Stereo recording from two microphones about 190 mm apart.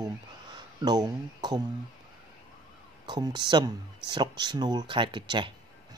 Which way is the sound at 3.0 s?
20° right (ahead or behind).